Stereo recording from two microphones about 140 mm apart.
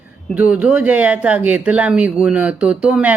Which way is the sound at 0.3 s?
10° right (ahead or behind).